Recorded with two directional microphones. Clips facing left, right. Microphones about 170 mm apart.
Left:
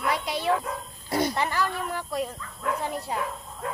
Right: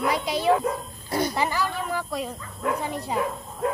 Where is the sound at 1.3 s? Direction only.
5° right (ahead or behind).